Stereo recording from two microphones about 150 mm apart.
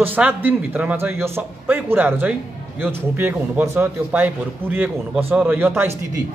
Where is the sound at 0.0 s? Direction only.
10° right (ahead or behind).